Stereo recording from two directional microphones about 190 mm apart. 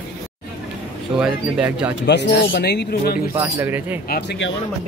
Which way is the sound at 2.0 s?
65° left (ahead or behind).